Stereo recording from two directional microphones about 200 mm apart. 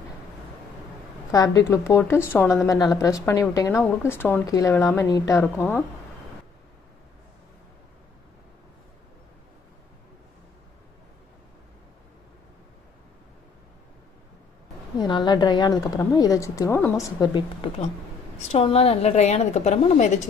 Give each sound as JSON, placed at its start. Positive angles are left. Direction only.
{"t": 1.3, "sound": "speech", "side_deg": 15}
{"t": 15.0, "sound": "a woman's voice", "side_deg": 20}
{"t": 18.4, "sound": "a woman's voice", "side_deg": 30}